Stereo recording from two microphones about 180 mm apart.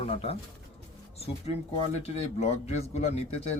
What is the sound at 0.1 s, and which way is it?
Speech, 35° left (ahead or behind).